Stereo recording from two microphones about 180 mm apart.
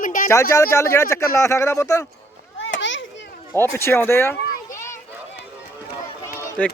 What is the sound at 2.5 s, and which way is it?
Children playing, 90° left.